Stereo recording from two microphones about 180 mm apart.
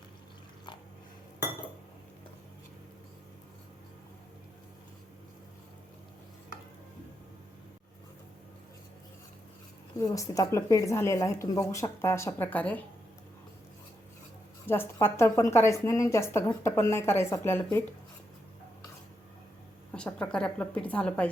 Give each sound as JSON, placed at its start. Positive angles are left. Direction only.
{"t": 10.0, "sound": "a woman's voice", "side_deg": 20}
{"t": 14.7, "sound": "a woman's voice", "side_deg": 10}
{"t": 19.9, "sound": "a woman's voice", "side_deg": 5}